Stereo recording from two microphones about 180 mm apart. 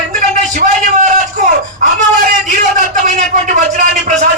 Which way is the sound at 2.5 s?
45° right (ahead or behind).